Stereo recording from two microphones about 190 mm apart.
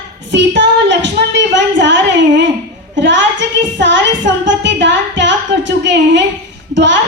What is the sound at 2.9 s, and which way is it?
A woman's voice, 70° right (ahead or behind).